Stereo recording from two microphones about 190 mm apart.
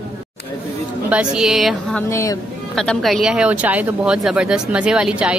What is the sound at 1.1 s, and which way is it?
Speech, 5° right (ahead or behind).